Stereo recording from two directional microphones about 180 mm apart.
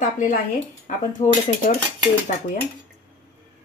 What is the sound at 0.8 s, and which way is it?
Cutlery, 45° left (ahead or behind).